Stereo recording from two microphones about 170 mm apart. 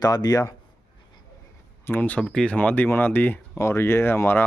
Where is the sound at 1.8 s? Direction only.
10° left (ahead or behind).